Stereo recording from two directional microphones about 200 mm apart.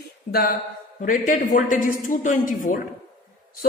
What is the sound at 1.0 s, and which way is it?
A woman's voice, 40° left (ahead or behind).